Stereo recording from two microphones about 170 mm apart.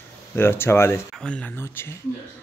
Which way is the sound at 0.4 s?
15° left (ahead or behind).